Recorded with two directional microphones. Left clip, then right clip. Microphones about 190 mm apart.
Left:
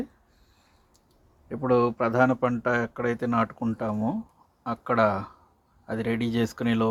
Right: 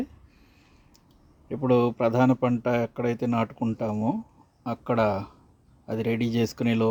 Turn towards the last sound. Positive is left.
turn(degrees=-35)  # may be behind; listen again after turning